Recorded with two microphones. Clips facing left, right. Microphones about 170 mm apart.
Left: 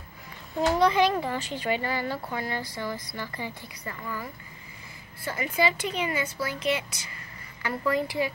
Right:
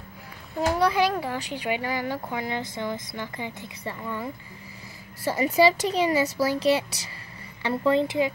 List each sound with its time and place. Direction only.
0.6 s speech: 10° right (ahead or behind); by 4.3 s 25° right (ahead or behind)
5.3 s a woman's voice: 35° right (ahead or behind)